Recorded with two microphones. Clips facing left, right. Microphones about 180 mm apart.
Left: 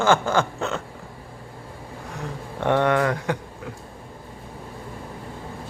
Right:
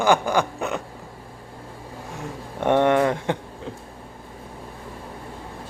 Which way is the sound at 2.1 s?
20° right (ahead or behind).